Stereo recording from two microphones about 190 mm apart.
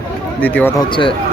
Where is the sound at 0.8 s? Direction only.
25° left (ahead or behind).